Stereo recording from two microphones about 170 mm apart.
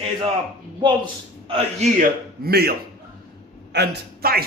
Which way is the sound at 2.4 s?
65° right (ahead or behind).